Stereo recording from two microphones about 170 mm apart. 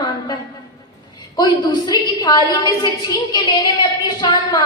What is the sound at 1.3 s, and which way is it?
A woman's voice, 25° left (ahead or behind).